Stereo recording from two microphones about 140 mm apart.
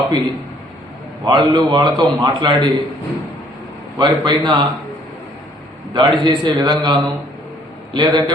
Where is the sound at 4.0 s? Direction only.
35° right (ahead or behind).